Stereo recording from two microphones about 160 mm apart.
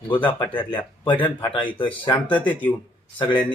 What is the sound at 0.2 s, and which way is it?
Speech, 30° left (ahead or behind).